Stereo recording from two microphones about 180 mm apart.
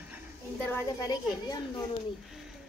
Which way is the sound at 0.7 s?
15° left (ahead or behind).